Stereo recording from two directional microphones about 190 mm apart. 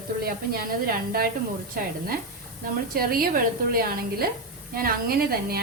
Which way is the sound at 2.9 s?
50° right (ahead or behind).